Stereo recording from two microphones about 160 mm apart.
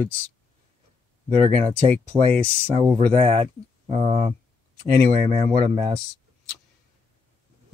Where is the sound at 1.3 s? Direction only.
40° right (ahead or behind).